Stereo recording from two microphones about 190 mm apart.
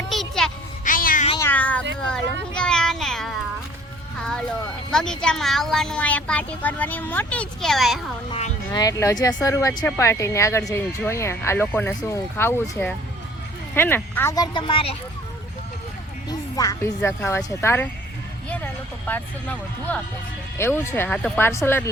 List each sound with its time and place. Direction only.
0.1 s a sound: centre (ahead or behind)
0.9 s a sound: 45° left (ahead or behind)
1.4 s cat: 10° left (ahead or behind)
4.2 s music: 5° left (ahead or behind)
4.9 s speech: 5° left (ahead or behind)
8.3 s speech: 35° left (ahead or behind)
8.7 s speech: 20° left (ahead or behind)
16.3 s speech: 20° left (ahead or behind)
19.0 s speech: 10° left (ahead or behind)